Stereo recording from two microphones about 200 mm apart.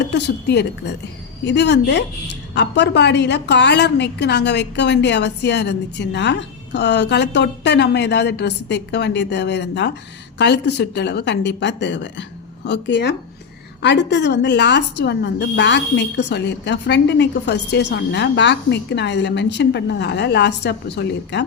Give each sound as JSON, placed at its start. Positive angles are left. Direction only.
{"t": 0.0, "sound": "a woman's voice", "side_deg": 60}